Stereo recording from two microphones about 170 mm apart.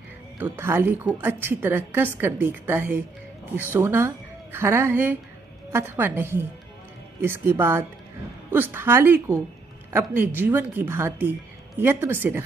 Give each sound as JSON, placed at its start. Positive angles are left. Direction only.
{"t": 0.4, "sound": "a woman's voice", "side_deg": -15}